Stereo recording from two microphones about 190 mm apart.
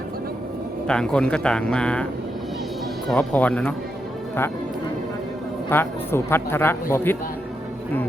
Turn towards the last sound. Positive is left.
turn(degrees=10)  # may be behind; listen again after turning